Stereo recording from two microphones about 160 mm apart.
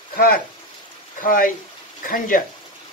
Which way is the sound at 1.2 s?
60° left (ahead or behind).